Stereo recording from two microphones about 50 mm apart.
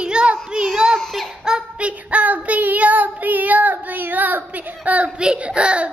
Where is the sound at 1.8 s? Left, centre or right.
Right.